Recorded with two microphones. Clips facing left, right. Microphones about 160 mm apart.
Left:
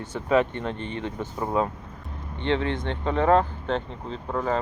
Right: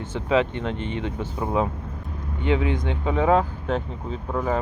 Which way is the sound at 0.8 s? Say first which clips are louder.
Right 3 dB; 40° left (ahead or behind).